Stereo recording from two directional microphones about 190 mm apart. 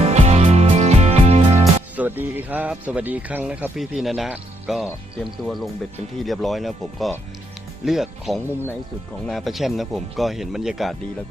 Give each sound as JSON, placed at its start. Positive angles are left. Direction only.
{"t": 0.0, "sound": "music", "side_deg": -35}
{"t": 2.0, "sound": "speech", "side_deg": -10}